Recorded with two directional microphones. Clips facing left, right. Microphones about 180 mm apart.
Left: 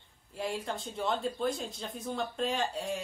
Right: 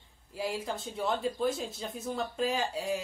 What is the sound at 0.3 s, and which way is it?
Speech, centre (ahead or behind).